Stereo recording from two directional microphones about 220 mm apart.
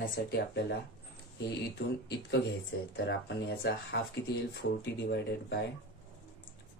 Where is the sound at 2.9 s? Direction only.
50° left (ahead or behind).